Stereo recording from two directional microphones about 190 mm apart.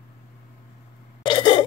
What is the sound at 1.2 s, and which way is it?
Throat clearing, 25° left (ahead or behind).